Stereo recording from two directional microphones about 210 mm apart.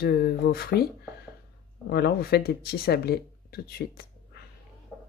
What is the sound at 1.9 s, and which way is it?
Speech, 50° left (ahead or behind).